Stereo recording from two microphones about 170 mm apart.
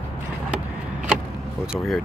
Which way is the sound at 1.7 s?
Centre (ahead or behind).